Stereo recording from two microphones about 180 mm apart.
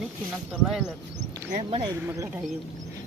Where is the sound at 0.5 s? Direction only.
Centre (ahead or behind).